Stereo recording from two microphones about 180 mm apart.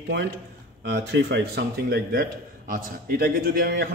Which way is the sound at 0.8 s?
75° right (ahead or behind).